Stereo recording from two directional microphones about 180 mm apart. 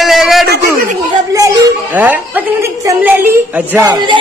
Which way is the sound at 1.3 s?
15° right (ahead or behind).